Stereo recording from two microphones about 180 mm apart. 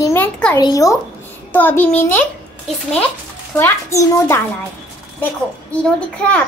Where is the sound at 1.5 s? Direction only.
10° left (ahead or behind).